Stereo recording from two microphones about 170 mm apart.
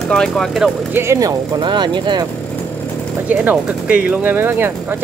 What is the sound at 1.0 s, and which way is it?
Speech, 15° right (ahead or behind).